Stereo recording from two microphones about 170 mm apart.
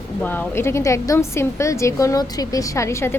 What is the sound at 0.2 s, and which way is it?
Speech, 10° left (ahead or behind).